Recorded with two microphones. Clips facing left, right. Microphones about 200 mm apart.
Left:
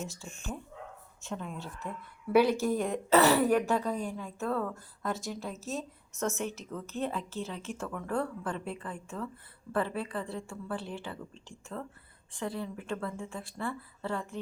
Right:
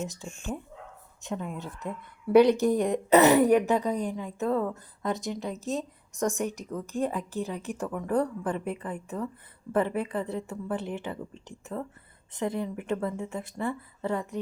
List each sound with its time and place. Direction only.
0.1 s a woman's voice: 20° right (ahead or behind)